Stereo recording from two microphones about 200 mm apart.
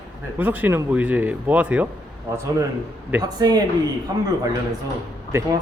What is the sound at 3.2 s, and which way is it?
Speech, 20° right (ahead or behind).